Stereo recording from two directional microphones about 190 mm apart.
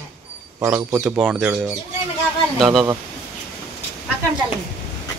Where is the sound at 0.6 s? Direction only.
10° right (ahead or behind).